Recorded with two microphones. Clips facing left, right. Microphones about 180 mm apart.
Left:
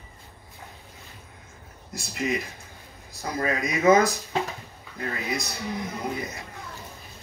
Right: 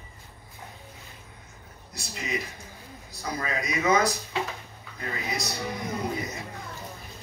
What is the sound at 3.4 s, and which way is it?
Speech, 50° left (ahead or behind).